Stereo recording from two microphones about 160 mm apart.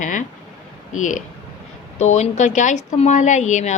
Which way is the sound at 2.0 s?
45° left (ahead or behind).